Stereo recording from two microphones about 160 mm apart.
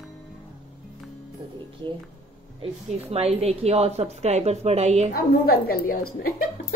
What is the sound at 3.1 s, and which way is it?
A woman's voice, 40° right (ahead or behind).